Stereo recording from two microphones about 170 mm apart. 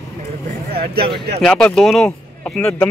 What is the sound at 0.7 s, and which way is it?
Speech, 65° right (ahead or behind).